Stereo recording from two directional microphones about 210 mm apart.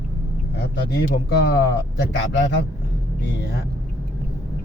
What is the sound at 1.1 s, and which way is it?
Speech, 50° left (ahead or behind).